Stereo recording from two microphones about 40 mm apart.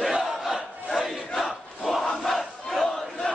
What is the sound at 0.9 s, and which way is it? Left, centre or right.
Crowd, centre.